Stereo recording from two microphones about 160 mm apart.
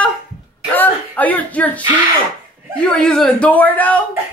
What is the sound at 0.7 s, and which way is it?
Slap, 10° left (ahead or behind).